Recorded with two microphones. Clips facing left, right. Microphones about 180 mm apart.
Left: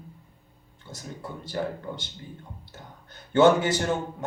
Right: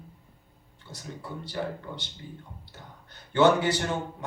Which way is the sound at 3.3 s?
45° left (ahead or behind).